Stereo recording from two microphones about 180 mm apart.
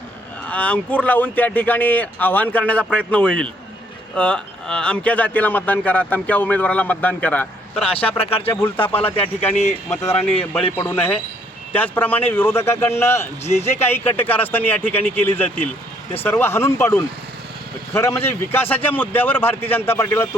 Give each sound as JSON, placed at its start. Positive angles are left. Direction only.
{"t": 0.4, "sound": "speech", "side_deg": 5}
{"t": 8.1, "sound": "speech", "side_deg": 30}
{"t": 10.8, "sound": "speech", "side_deg": 10}
{"t": 13.4, "sound": "speech", "side_deg": 35}
{"t": 13.8, "sound": "speech", "side_deg": 10}